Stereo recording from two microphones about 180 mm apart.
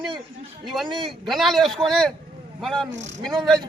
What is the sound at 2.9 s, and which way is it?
Speech, 85° right.